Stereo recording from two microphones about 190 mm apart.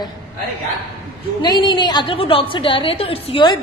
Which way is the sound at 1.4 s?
20° left (ahead or behind).